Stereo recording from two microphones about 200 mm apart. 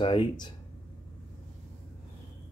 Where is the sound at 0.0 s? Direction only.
25° left (ahead or behind).